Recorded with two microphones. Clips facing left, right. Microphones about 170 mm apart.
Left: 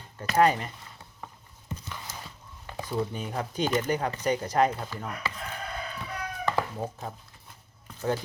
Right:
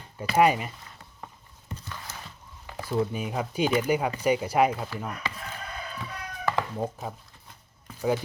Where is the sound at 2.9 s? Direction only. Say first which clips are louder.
Right 4 dB; 10° right (ahead or behind).